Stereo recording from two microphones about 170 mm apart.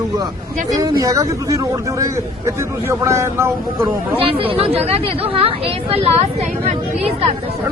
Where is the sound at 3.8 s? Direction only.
30° right (ahead or behind).